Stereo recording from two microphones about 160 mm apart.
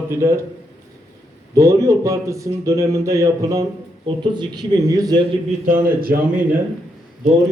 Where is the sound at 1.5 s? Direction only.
20° right (ahead or behind).